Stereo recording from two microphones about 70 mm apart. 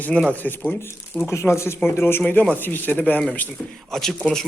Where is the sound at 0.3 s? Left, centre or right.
Left.